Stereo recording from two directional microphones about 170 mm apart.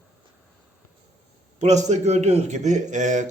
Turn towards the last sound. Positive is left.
turn(degrees=-45)  # may be behind; listen again after turning